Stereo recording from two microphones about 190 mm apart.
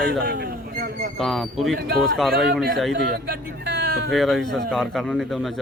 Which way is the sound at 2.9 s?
60° right (ahead or behind).